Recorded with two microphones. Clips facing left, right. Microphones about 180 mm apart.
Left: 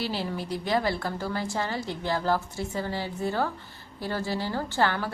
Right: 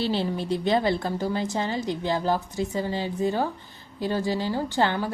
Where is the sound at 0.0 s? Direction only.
25° right (ahead or behind).